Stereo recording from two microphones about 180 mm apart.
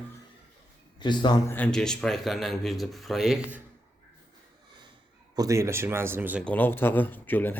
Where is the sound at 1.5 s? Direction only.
10° left (ahead or behind).